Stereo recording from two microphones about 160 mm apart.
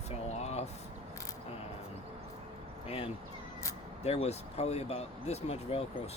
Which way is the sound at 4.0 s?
40° left (ahead or behind).